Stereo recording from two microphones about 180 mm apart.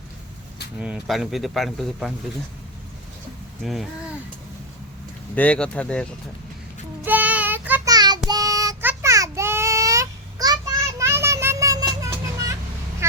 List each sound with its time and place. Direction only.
0.8 s speech: 5° right (ahead or behind)
3.6 s speech: centre (ahead or behind)
5.3 s speech: 5° left (ahead or behind)
7.0 s child singing: 10° right (ahead or behind)
7.9 s child singing: 20° right (ahead or behind)